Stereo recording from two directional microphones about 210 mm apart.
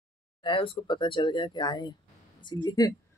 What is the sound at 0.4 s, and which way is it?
Speech, 25° left (ahead or behind).